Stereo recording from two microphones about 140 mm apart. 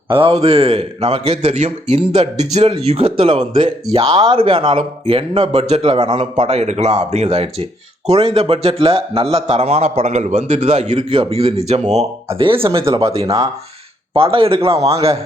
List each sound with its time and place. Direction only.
0.1 s a man's voice: 40° right (ahead or behind)
12.4 s speech: 40° right (ahead or behind)
14.1 s a man's voice: 40° right (ahead or behind)